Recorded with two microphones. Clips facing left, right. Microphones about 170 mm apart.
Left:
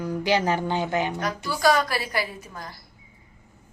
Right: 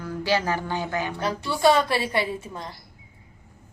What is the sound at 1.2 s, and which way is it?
A woman's voice, 30° right (ahead or behind).